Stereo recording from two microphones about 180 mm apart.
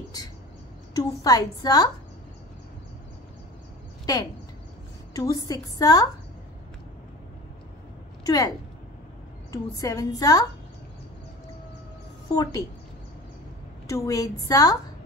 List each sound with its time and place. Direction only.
0.9 s a woman's voice: 20° left (ahead or behind)
4.0 s a sound: 20° left (ahead or behind)
5.1 s a woman's voice: 20° left (ahead or behind)
8.3 s a woman's voice: 20° left (ahead or behind)
12.3 s a woman's voice: 20° left (ahead or behind)
13.8 s a woman's voice: 20° left (ahead or behind)